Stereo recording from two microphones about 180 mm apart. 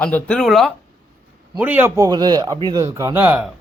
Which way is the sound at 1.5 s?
10° right (ahead or behind).